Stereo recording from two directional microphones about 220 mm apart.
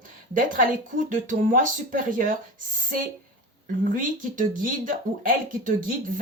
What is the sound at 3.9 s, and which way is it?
Speech, 35° right (ahead or behind).